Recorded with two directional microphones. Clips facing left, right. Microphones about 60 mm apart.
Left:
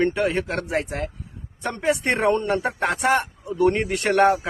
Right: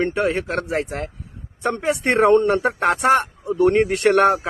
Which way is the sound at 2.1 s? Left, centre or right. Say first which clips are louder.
Right 9 dB; right.